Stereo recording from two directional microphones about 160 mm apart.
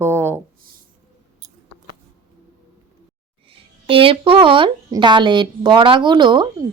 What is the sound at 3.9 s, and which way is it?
Speech, 35° right (ahead or behind).